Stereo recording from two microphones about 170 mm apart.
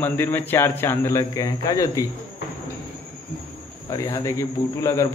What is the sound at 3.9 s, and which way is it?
A man's voice, 20° left (ahead or behind).